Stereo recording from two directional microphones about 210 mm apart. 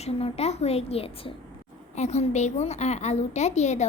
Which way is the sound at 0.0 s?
30° left (ahead or behind).